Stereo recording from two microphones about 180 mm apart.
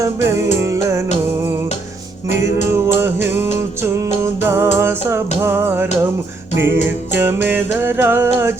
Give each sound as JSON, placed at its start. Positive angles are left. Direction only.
{"t": 0.0, "sound": "music", "side_deg": -15}
{"t": 2.7, "sound": "music", "side_deg": -15}
{"t": 7.2, "sound": "music", "side_deg": -10}